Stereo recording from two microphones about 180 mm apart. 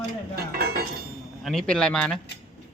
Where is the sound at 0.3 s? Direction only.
60° right (ahead or behind).